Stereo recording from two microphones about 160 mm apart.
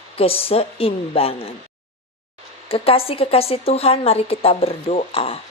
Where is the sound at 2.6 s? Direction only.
35° left (ahead or behind).